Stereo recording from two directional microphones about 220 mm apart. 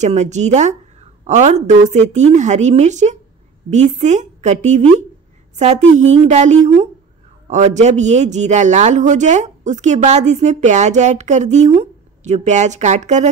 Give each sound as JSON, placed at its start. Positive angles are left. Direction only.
{"t": 0.0, "sound": "a man's voice", "side_deg": -30}
{"t": 5.9, "sound": "a man's voice", "side_deg": -30}